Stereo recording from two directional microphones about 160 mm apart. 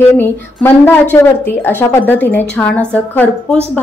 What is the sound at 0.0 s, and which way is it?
A woman's voice, 15° left (ahead or behind).